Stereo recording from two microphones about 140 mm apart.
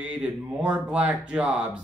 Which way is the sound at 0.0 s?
10° right (ahead or behind).